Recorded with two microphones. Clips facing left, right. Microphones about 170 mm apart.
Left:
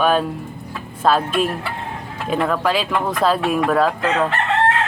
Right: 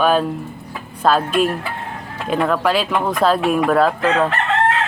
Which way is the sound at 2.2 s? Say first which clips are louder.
Right 2 dB; centre (ahead or behind).